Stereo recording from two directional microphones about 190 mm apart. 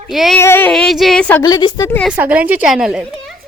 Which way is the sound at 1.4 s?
20° left (ahead or behind).